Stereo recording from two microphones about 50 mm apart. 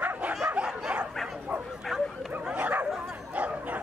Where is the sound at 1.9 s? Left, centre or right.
Centre.